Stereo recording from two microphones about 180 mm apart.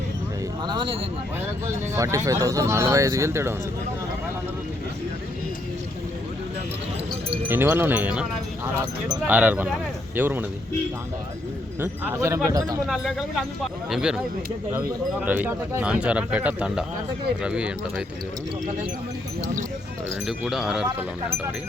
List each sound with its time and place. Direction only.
1.6 s speech: 15° right (ahead or behind)
7.4 s speech: 10° right (ahead or behind)
11.8 s speech: 15° right (ahead or behind)
12.9 s speech: 5° right (ahead or behind)
20.2 s speech: centre (ahead or behind)